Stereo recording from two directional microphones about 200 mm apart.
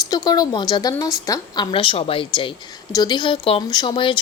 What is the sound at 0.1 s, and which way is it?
A woman's voice, 20° left (ahead or behind).